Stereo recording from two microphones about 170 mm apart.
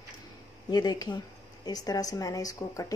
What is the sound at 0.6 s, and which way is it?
Speech, 25° left (ahead or behind).